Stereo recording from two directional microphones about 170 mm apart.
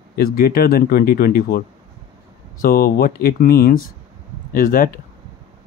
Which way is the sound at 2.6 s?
60° left (ahead or behind).